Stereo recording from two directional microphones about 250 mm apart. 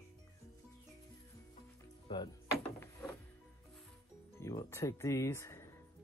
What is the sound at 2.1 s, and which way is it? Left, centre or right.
Music, centre.